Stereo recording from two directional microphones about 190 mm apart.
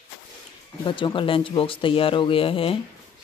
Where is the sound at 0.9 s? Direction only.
25° left (ahead or behind).